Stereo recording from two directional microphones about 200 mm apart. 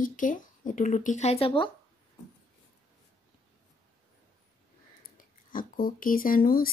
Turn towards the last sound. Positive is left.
turn(degrees=45)  # may be behind; listen again after turning